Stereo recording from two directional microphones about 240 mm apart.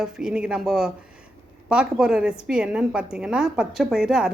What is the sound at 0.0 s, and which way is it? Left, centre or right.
A woman's voice, centre.